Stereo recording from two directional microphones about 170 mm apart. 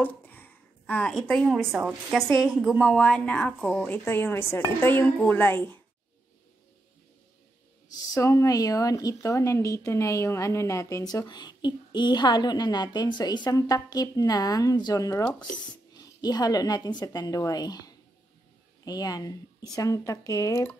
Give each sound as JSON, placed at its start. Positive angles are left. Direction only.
{"t": 0.0, "sound": "a sound", "side_deg": 10}
{"t": 1.7, "sound": "a woman's voice", "side_deg": -5}
{"t": 8.1, "sound": "a woman's voice", "side_deg": 15}